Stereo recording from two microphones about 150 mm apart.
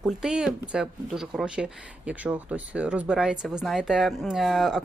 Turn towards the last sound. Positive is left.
turn(degrees=0)  # may be behind; listen again after turning